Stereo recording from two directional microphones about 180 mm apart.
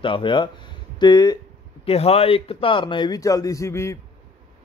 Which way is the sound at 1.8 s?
35° left (ahead or behind).